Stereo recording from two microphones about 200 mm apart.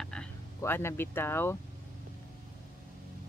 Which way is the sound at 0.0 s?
5° left (ahead or behind).